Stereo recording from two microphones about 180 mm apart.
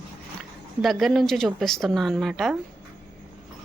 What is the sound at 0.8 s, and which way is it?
A woman's voice, centre (ahead or behind).